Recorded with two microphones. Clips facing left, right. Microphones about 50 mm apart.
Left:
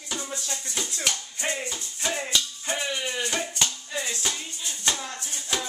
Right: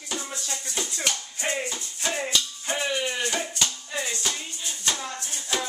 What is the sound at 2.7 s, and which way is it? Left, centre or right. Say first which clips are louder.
Maraca: right 2 dB; centre.